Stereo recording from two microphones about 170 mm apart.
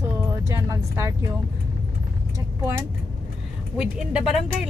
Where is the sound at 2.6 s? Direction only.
15° right (ahead or behind).